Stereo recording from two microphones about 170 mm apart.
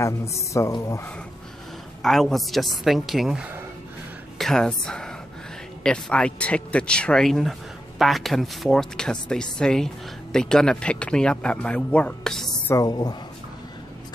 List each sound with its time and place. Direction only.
0.0 s a woman's voice: 15° left (ahead or behind)
2.0 s a woman's voice: centre (ahead or behind)
12.7 s speech: 20° left (ahead or behind)